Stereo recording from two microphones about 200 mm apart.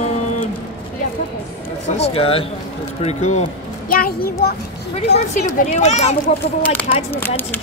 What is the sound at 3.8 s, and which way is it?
A child's voice, 45° left (ahead or behind).